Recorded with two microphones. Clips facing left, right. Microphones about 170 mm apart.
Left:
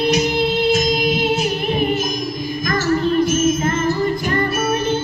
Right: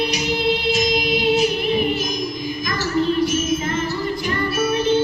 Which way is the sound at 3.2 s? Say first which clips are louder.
Left 3 dB; 45° left (ahead or behind).